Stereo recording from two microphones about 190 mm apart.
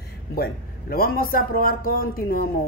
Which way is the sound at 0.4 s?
50° left (ahead or behind).